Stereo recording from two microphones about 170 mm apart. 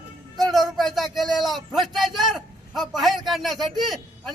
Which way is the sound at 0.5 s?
Centre (ahead or behind).